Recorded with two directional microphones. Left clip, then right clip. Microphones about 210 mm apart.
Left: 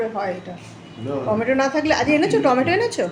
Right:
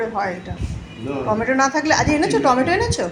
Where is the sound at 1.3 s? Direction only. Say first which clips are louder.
Right 2 dB; 15° left (ahead or behind).